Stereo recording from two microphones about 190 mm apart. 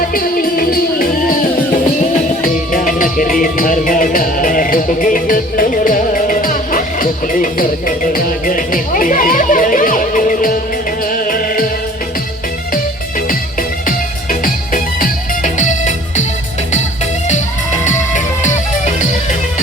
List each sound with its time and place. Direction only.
0.1 s music: 50° left (ahead or behind)
12.7 s music: 45° left (ahead or behind)